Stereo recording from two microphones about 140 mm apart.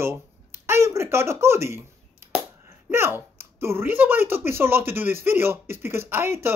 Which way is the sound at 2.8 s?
15° right (ahead or behind).